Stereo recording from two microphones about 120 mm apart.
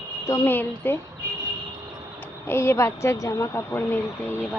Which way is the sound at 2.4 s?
20° left (ahead or behind).